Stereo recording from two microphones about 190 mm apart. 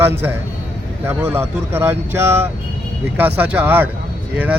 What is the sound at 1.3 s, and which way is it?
Speech, 15° right (ahead or behind).